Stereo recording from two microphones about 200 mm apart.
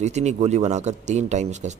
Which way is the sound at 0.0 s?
35° right (ahead or behind).